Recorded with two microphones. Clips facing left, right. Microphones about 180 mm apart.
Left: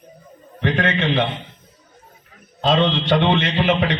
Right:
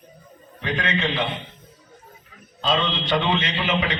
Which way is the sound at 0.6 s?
60° left (ahead or behind).